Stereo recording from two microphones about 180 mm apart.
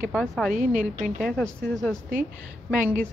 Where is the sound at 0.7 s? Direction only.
45° right (ahead or behind).